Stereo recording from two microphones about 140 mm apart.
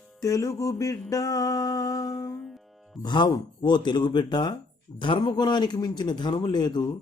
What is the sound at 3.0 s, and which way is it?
Speech, 30° left (ahead or behind).